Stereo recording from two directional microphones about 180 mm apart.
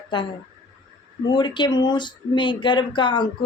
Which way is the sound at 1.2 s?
25° left (ahead or behind).